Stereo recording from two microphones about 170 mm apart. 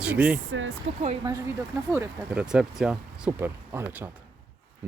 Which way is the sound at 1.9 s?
10° right (ahead or behind).